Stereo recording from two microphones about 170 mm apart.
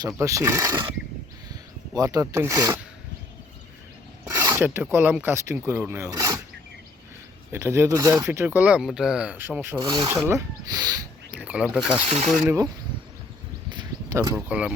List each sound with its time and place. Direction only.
0.2 s speech: 15° right (ahead or behind)
1.9 s speech: 20° right (ahead or behind)
4.3 s speech: 15° right (ahead or behind)
7.5 s speech: 15° right (ahead or behind)
9.9 s speech: 25° right (ahead or behind)
11.3 s speech: 10° right (ahead or behind)
12.0 s speech: 35° right (ahead or behind)
13.7 s a sound: 25° right (ahead or behind)
14.3 s speech: 5° right (ahead or behind)